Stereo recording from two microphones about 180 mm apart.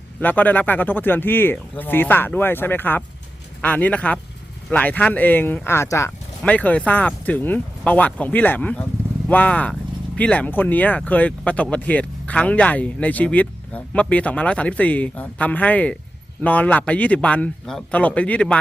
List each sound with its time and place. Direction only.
0.2 s speech: 10° left (ahead or behind)